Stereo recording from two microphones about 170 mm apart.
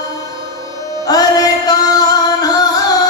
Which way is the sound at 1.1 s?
20° left (ahead or behind).